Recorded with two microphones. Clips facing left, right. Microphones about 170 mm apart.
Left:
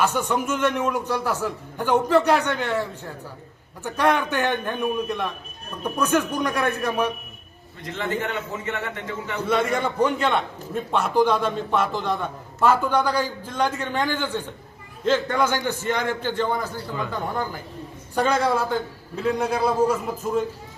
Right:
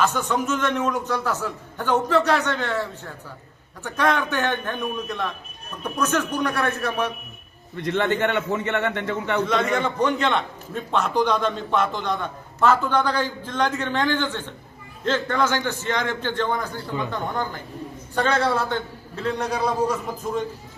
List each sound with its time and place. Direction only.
0.0 s a man's voice: 10° left (ahead or behind)
7.8 s a man's voice: 70° right (ahead or behind)
9.5 s a man's voice: 10° left (ahead or behind)